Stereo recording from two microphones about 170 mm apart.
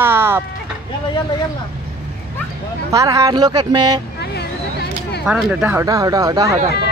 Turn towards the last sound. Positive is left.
turn(degrees=-20)  # may be behind; listen again after turning